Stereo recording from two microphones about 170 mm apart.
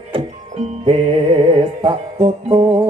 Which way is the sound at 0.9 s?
35° right (ahead or behind).